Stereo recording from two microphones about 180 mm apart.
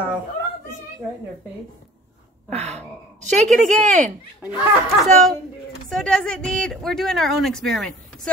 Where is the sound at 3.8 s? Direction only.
40° right (ahead or behind).